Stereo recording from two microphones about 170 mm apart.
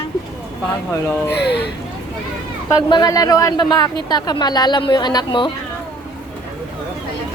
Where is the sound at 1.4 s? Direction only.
80° left.